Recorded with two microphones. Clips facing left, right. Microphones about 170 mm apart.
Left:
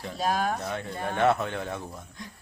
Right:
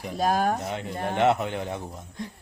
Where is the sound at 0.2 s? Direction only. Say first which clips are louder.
Right 4 dB; 45° right (ahead or behind).